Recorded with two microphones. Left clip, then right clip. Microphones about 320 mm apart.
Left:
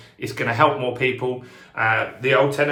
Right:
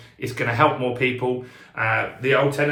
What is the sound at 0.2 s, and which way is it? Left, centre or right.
Speech, centre.